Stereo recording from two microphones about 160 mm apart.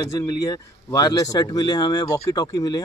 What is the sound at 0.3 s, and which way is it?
Speech, 20° left (ahead or behind).